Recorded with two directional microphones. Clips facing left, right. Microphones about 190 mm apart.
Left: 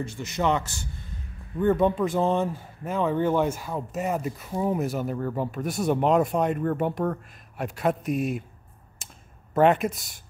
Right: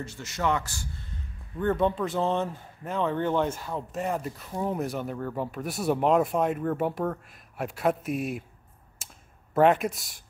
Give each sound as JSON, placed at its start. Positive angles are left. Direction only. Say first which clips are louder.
{"t": 0.0, "sound": "a man's voice", "louder": "left 3 dB", "side_deg": 15}
{"t": 1.6, "sound": "speech", "louder": "left 4 dB", "side_deg": 10}
{"t": 8.9, "sound": "a sound", "louder": "left 2 dB", "side_deg": 0}